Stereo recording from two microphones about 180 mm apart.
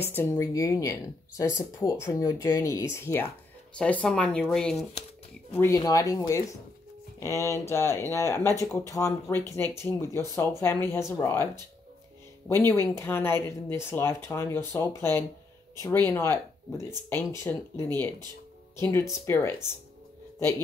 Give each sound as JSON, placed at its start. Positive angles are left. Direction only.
{"t": 0.0, "sound": "speech", "side_deg": 15}
{"t": 5.6, "sound": "speech", "side_deg": 20}
{"t": 12.4, "sound": "speech", "side_deg": 15}